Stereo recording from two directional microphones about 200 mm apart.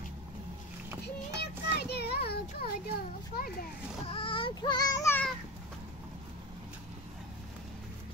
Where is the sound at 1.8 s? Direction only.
55° left (ahead or behind).